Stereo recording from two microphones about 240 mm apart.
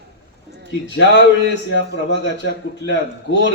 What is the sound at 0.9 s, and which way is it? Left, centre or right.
A man's voice, left.